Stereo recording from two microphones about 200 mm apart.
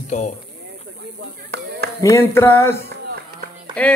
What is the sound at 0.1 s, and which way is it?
Speech, 35° left (ahead or behind).